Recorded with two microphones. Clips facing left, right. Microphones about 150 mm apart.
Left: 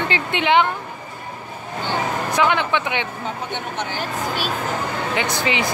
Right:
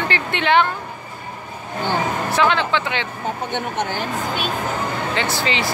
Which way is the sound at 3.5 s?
50° right (ahead or behind).